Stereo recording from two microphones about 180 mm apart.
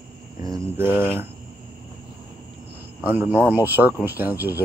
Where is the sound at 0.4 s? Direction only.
15° right (ahead or behind).